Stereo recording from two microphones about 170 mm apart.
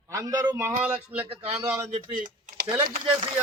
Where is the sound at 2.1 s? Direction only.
55° right (ahead or behind).